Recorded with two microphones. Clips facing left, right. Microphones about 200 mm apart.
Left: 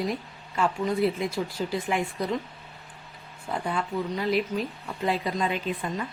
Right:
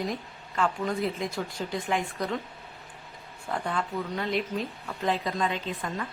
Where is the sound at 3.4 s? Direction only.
5° left (ahead or behind).